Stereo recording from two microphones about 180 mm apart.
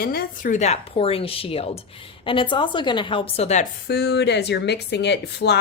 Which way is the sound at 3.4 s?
40° left (ahead or behind).